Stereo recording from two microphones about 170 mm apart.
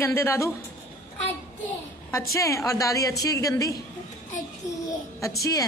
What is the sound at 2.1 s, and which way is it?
A woman's voice, 20° left (ahead or behind).